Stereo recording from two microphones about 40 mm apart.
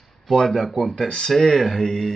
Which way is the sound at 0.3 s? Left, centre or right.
Centre.